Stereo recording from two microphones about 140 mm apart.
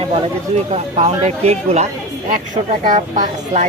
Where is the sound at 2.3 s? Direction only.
75° right (ahead or behind).